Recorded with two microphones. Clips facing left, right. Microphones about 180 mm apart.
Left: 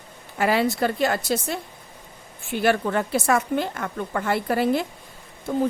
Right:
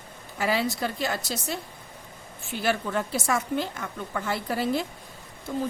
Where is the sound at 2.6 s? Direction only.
60° left (ahead or behind).